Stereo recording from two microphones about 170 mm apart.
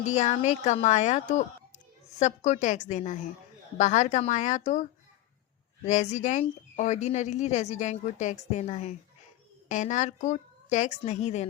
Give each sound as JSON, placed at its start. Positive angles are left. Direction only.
{"t": 0.1, "sound": "speech", "side_deg": 45}